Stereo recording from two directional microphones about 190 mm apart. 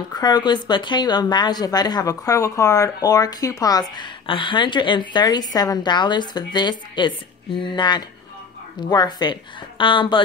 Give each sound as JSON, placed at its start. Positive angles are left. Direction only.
{"t": 0.1, "sound": "speech", "side_deg": 20}